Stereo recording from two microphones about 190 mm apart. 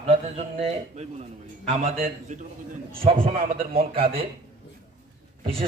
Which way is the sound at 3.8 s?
30° right (ahead or behind).